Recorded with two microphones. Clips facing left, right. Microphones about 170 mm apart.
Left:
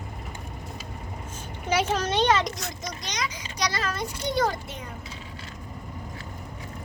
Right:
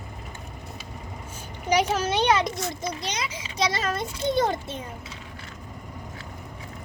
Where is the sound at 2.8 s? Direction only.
30° right (ahead or behind).